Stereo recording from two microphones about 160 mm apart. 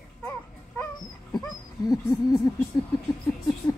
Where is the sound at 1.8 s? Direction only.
20° left (ahead or behind).